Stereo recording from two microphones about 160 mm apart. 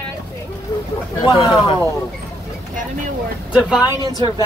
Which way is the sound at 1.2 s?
25° left (ahead or behind).